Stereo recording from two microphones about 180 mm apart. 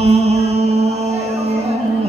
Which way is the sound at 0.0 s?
35° right (ahead or behind).